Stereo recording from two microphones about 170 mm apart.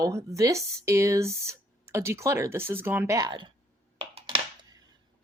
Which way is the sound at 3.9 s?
35° right (ahead or behind).